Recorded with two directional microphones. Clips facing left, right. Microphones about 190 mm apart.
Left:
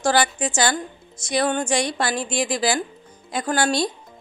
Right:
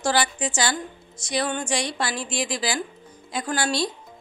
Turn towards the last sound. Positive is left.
turn(degrees=50)  # may be behind; listen again after turning